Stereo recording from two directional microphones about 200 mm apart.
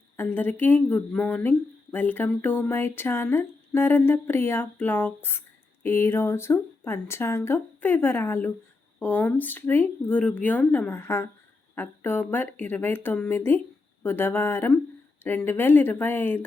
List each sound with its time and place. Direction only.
0.2 s speech: 10° left (ahead or behind)